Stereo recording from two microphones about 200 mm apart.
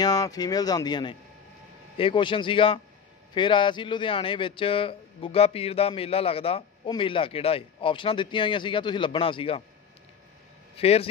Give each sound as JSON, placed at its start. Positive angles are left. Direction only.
{"t": 0.0, "sound": "a man's voice", "side_deg": 20}
{"t": 10.8, "sound": "a man's voice", "side_deg": 30}